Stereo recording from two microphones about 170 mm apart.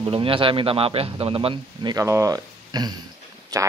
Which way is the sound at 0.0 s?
30° right (ahead or behind).